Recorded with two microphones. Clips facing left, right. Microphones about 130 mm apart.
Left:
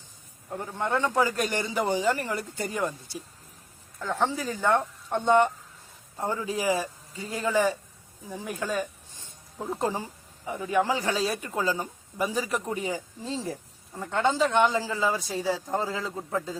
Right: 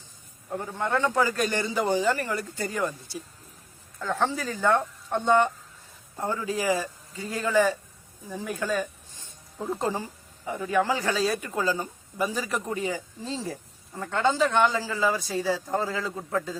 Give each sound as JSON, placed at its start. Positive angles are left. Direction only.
{"t": 0.8, "sound": "a man's voice", "side_deg": 15}
{"t": 10.4, "sound": "a man's voice", "side_deg": 10}